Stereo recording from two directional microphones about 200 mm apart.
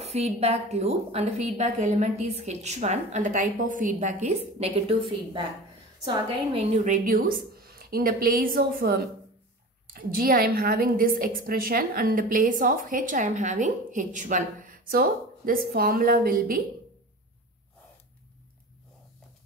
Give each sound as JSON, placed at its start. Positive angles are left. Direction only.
{"t": 0.0, "sound": "a woman's voice", "side_deg": -30}
{"t": 6.5, "sound": "a woman's voice", "side_deg": -35}